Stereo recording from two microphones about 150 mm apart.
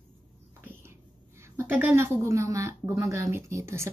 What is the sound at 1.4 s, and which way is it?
A woman's voice, 15° right (ahead or behind).